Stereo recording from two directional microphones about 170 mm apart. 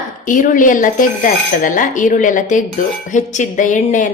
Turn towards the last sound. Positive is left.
turn(degrees=50)  # may be behind; listen again after turning